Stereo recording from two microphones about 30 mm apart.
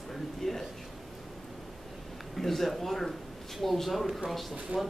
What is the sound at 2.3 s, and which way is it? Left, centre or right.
A man's voice, centre.